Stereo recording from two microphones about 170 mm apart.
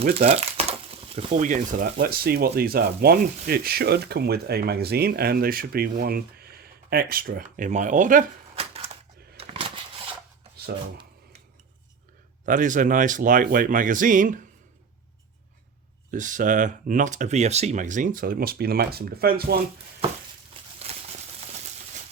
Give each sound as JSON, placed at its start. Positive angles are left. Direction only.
{"t": 0.1, "sound": "crumpling", "side_deg": -40}
{"t": 1.3, "sound": "speech", "side_deg": -50}
{"t": 8.5, "sound": "a sound", "side_deg": -35}
{"t": 12.5, "sound": "speech", "side_deg": -50}
{"t": 16.1, "sound": "speech", "side_deg": -50}
{"t": 20.6, "sound": "a sound", "side_deg": -30}